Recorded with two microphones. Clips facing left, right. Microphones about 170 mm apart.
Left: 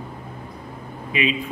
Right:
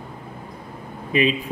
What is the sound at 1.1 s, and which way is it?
Speech, 40° right (ahead or behind).